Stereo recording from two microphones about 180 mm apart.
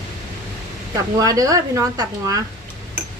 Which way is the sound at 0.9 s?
20° right (ahead or behind).